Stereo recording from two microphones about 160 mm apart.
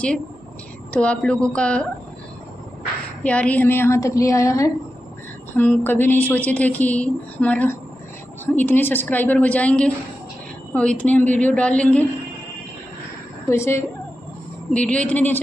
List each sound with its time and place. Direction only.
0.9 s a woman's voice: 5° left (ahead or behind)
3.3 s a woman's voice: 10° left (ahead or behind)
13.5 s a woman's voice: 15° left (ahead or behind)